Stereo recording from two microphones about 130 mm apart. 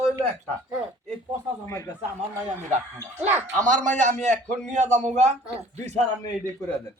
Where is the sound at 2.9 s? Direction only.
15° right (ahead or behind).